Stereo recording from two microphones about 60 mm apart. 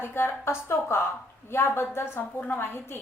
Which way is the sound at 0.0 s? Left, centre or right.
Left.